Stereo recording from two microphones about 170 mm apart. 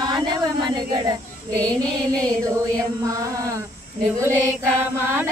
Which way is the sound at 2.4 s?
20° right (ahead or behind).